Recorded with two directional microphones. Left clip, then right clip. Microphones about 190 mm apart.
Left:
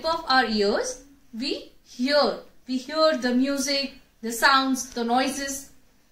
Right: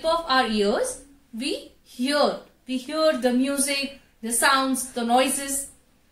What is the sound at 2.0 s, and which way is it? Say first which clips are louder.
A woman's voice: even; 15° right (ahead or behind).